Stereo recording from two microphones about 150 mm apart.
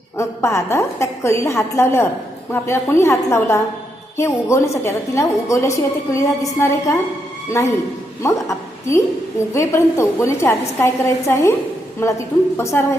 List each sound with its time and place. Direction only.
0.2 s a woman's voice: 20° left (ahead or behind)